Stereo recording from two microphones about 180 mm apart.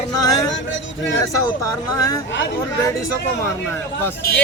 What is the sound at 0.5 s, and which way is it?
Speech, 90° left.